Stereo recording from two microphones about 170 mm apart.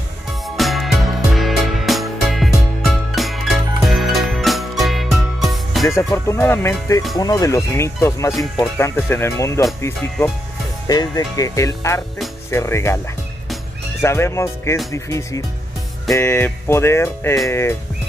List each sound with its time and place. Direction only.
0.6 s music: centre (ahead or behind)
5.9 s music: 15° left (ahead or behind)
7.2 s speech: 20° left (ahead or behind)
8.3 s speech: centre (ahead or behind)
8.7 s music: 15° left (ahead or behind)
10.9 s speech: 20° left (ahead or behind)
12.4 s music: 15° left (ahead or behind)
14.0 s music: 15° left (ahead or behind)
14.9 s speech: 20° left (ahead or behind)
16.2 s music: 15° left (ahead or behind)